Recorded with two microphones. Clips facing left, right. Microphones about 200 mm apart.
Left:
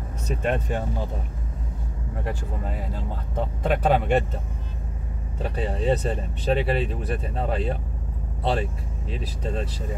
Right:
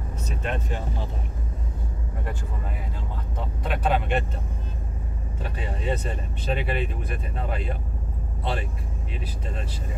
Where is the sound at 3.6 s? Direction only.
45° left (ahead or behind).